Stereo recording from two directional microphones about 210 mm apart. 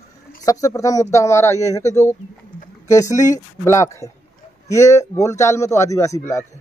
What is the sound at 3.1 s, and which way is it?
A man's voice, 15° left (ahead or behind).